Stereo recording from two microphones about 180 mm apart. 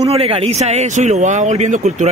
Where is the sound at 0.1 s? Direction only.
30° right (ahead or behind).